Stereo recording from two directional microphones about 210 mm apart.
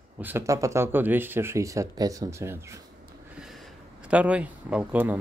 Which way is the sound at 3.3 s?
Centre (ahead or behind).